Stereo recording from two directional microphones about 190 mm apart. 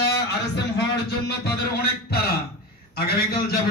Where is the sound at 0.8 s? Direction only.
55° left (ahead or behind).